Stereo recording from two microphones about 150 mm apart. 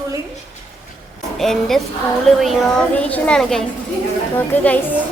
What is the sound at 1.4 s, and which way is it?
A woman's voice, centre (ahead or behind).